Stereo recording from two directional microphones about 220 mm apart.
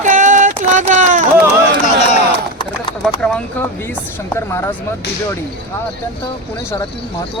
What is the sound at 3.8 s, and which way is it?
Speech, 10° left (ahead or behind).